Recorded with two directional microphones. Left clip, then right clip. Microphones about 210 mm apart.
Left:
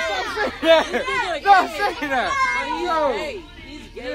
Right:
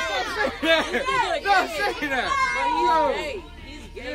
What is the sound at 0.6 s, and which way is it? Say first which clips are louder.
A man's voice: left 6 dB; 5° left (ahead or behind).